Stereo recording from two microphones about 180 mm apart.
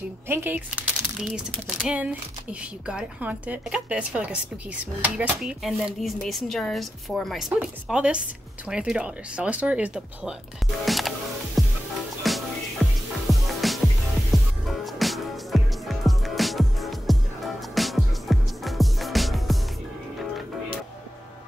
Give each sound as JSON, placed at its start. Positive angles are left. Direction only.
{"t": 0.3, "sound": "a woman's voice", "side_deg": -10}
{"t": 10.9, "sound": "music", "side_deg": 0}